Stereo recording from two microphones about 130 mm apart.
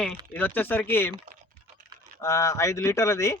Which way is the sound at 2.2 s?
25° left (ahead or behind).